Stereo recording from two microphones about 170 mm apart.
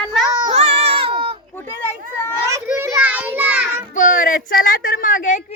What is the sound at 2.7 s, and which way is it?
A child's voice, 15° right (ahead or behind).